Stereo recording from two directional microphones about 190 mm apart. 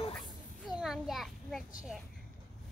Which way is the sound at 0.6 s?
Centre (ahead or behind).